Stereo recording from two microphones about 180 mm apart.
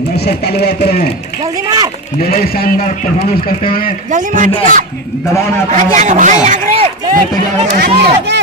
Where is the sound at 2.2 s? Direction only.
55° left (ahead or behind).